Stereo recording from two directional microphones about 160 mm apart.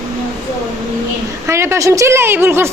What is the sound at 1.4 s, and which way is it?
A woman's voice, 15° right (ahead or behind).